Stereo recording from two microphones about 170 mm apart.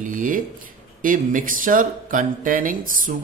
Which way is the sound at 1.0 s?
50° right (ahead or behind).